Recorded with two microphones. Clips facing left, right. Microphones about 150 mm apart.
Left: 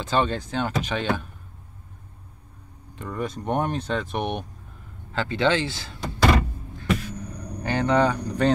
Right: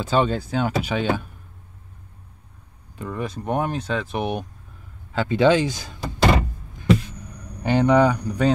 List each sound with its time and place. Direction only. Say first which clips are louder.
0.0 s speech: right 3 dB; 10° right (ahead or behind)
3.0 s speech: right 1 dB; 5° right (ahead or behind)
5.1 s door: right 5 dB; 10° right (ahead or behind)
7.6 s speech: right 4 dB; 15° right (ahead or behind)